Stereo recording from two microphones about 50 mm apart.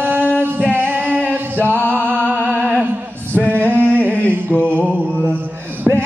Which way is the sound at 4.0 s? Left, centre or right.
Left.